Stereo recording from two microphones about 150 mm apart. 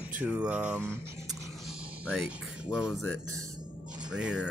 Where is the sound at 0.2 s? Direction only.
5° right (ahead or behind).